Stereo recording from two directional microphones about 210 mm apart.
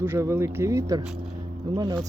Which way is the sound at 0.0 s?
10° right (ahead or behind).